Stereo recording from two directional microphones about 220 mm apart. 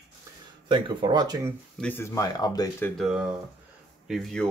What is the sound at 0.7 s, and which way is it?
Speech, 20° right (ahead or behind).